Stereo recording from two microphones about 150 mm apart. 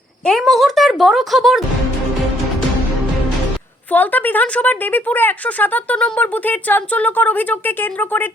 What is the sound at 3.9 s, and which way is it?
A woman's voice, 10° left (ahead or behind).